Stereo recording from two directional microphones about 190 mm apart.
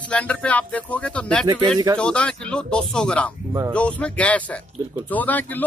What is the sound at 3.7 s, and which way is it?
Speech, 5° left (ahead or behind).